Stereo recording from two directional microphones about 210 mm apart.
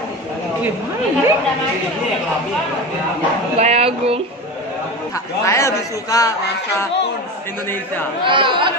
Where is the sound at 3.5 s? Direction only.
30° right (ahead or behind).